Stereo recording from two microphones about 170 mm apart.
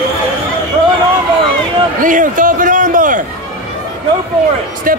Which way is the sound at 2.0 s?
50° right (ahead or behind).